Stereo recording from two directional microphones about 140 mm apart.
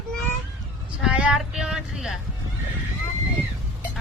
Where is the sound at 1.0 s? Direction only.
5° right (ahead or behind).